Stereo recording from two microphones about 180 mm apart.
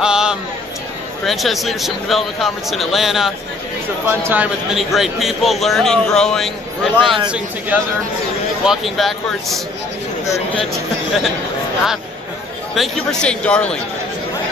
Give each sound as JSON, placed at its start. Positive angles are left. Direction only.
{"t": 0.0, "sound": "a sound", "side_deg": -5}
{"t": 1.2, "sound": "a man's voice", "side_deg": 0}
{"t": 10.2, "sound": "speech", "side_deg": 15}
{"t": 12.7, "sound": "a man's voice", "side_deg": 0}